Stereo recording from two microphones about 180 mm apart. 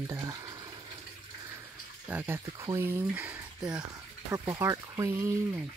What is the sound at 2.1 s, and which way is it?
Speech, 10° right (ahead or behind).